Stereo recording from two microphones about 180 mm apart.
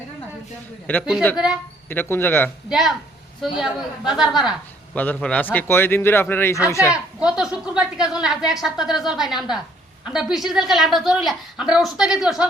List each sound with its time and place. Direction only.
0.9 s a man's voice: 10° left (ahead or behind)
2.6 s a woman's voice: centre (ahead or behind)
4.9 s a man's voice: 10° left (ahead or behind)
6.9 s a woman's voice: 5° right (ahead or behind)